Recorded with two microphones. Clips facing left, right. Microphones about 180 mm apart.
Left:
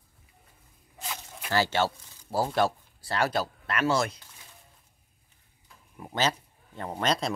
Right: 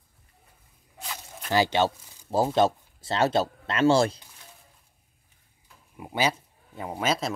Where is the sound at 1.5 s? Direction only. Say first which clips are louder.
Right 3 dB; 15° right (ahead or behind).